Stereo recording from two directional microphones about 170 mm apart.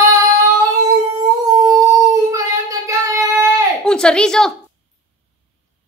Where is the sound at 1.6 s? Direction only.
20° right (ahead or behind).